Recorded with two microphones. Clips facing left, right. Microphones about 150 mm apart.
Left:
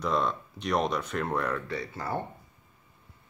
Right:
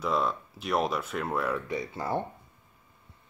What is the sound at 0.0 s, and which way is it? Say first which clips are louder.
Speech: even; 5° right (ahead or behind).